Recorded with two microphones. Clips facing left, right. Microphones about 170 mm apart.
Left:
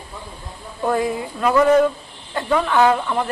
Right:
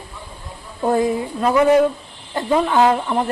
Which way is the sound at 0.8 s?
25° right (ahead or behind).